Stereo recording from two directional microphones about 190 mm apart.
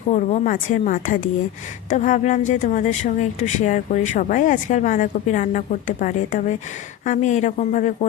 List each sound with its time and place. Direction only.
0.1 s a woman's voice: 40° left (ahead or behind)